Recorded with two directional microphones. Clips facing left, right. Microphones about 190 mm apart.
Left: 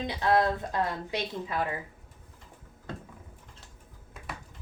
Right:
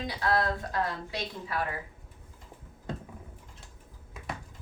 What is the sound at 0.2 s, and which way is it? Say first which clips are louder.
A woman's voice: left 4 dB; 20° left (ahead or behind).